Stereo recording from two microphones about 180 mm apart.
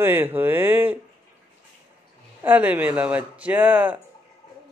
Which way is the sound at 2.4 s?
10° right (ahead or behind).